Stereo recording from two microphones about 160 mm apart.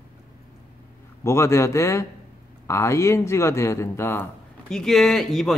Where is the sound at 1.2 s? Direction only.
15° left (ahead or behind).